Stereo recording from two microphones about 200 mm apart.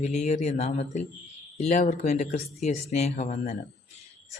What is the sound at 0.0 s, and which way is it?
Speech, 35° left (ahead or behind).